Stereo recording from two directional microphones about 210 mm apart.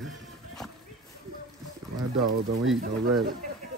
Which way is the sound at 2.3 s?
90° right.